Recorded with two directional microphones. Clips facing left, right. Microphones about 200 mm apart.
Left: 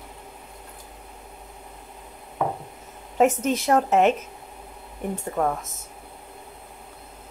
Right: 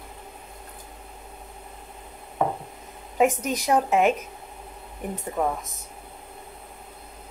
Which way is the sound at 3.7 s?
Centre (ahead or behind).